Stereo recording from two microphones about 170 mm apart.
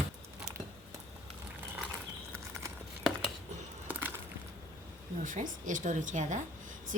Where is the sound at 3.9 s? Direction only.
10° right (ahead or behind).